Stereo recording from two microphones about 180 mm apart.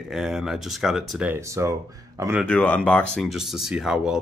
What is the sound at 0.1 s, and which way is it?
Speech, 5° right (ahead or behind).